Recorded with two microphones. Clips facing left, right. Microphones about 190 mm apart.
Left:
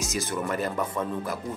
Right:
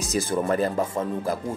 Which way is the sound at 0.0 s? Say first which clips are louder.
Right 5 dB; 35° right (ahead or behind).